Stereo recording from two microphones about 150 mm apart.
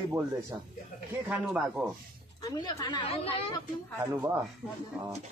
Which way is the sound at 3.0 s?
40° left (ahead or behind).